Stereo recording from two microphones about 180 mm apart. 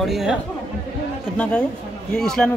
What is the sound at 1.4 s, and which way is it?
Speech, 5° left (ahead or behind).